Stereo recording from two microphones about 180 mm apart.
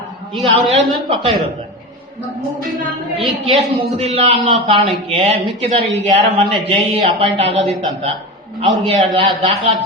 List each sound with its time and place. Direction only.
0.7 s a man's voice: 30° right (ahead or behind)
3.2 s a man's voice: 30° right (ahead or behind)